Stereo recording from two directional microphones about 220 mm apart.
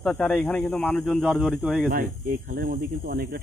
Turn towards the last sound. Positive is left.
turn(degrees=-40)  # may be behind; listen again after turning